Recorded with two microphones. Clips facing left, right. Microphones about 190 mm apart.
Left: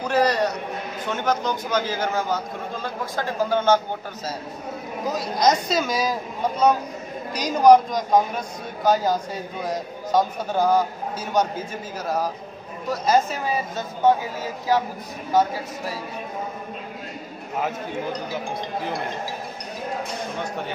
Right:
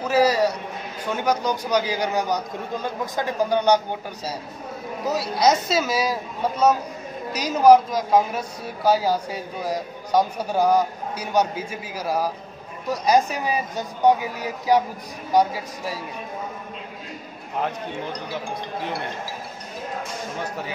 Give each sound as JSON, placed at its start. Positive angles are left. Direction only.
{"t": 0.0, "sound": "a sound", "side_deg": -5}
{"t": 1.0, "sound": "a man's voice", "side_deg": -10}
{"t": 5.1, "sound": "a woman's voice", "side_deg": -5}
{"t": 7.3, "sound": "a man's voice", "side_deg": -5}